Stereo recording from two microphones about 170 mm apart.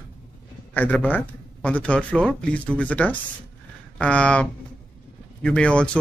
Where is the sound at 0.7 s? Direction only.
10° left (ahead or behind).